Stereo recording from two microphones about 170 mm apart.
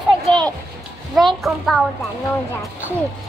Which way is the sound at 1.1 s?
Centre (ahead or behind).